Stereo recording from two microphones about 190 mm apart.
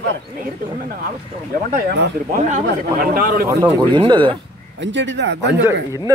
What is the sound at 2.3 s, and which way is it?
A man's voice, 45° right (ahead or behind).